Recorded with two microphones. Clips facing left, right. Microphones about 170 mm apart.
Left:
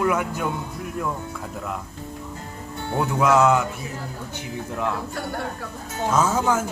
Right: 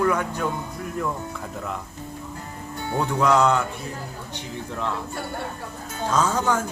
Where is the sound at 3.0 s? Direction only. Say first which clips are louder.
Left 1 dB; 5° left (ahead or behind).